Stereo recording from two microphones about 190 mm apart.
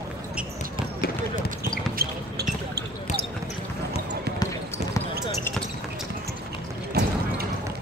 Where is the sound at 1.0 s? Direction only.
50° left (ahead or behind).